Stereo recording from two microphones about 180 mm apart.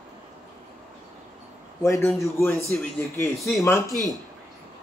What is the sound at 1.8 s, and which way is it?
Speech, 15° left (ahead or behind).